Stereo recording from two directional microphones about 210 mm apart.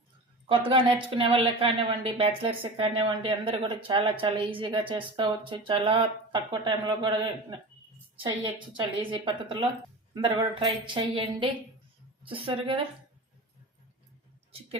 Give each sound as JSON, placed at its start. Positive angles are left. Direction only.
{"t": 0.4, "sound": "speech", "side_deg": -25}
{"t": 8.7, "sound": "speech", "side_deg": -25}